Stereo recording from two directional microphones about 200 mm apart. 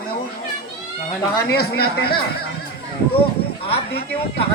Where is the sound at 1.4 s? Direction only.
55° left (ahead or behind).